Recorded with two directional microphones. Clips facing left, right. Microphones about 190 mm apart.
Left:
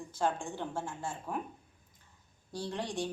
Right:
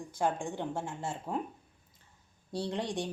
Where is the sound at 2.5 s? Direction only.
20° right (ahead or behind).